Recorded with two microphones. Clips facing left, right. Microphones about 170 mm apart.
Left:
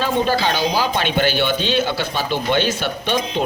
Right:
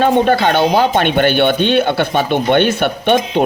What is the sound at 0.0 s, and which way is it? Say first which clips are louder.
Speech: right 7 dB; 60° right (ahead or behind).